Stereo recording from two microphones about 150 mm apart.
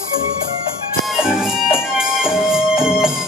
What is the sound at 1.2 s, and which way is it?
Music, 5° right (ahead or behind).